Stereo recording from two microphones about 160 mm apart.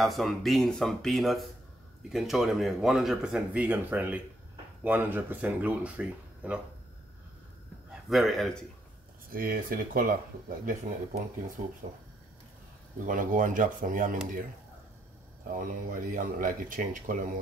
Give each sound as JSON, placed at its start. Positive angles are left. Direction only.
{"t": 0.0, "sound": "speech", "side_deg": 0}
{"t": 7.9, "sound": "a man's voice", "side_deg": 0}
{"t": 9.3, "sound": "speech", "side_deg": -60}
{"t": 11.6, "sound": "speech", "side_deg": -45}
{"t": 13.0, "sound": "speech", "side_deg": -55}
{"t": 15.5, "sound": "speech", "side_deg": -55}